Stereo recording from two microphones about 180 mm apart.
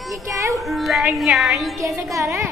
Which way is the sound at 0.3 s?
15° right (ahead or behind).